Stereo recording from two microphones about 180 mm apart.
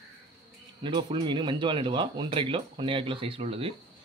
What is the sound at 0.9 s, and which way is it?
Speech, 30° right (ahead or behind).